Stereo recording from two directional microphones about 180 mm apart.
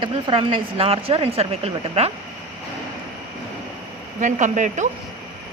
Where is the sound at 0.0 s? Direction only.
30° right (ahead or behind).